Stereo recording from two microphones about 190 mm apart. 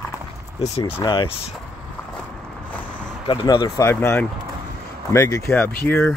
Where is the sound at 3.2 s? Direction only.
25° left (ahead or behind).